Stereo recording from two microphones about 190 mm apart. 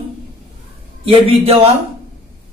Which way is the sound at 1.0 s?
30° right (ahead or behind).